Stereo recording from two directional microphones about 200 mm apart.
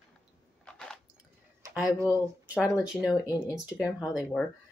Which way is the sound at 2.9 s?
5° right (ahead or behind).